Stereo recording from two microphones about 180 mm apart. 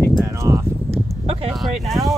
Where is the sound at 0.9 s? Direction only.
35° right (ahead or behind).